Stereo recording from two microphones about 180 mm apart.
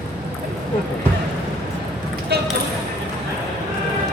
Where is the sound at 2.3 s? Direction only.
60° right (ahead or behind).